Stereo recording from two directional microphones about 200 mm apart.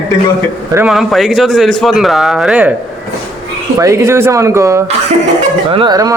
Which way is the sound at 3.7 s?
15° right (ahead or behind).